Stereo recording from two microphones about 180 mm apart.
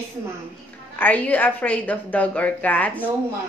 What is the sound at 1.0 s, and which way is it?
A woman's voice, 10° left (ahead or behind).